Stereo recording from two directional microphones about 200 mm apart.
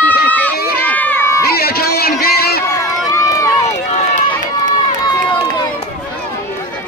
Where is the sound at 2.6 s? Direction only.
15° left (ahead or behind).